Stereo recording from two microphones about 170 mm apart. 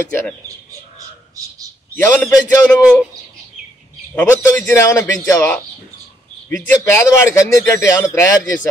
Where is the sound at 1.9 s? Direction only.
15° left (ahead or behind).